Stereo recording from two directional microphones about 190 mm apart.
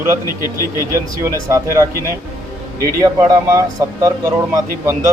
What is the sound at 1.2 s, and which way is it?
Speech, 15° right (ahead or behind).